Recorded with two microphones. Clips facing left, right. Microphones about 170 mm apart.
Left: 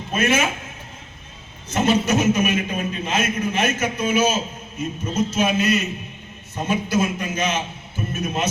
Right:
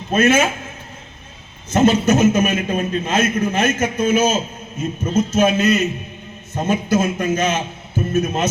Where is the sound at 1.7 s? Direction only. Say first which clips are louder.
Right 5 dB; 45° right (ahead or behind).